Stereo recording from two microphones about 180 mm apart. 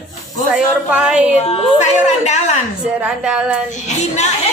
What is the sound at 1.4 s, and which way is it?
A woman's voice, 40° left (ahead or behind).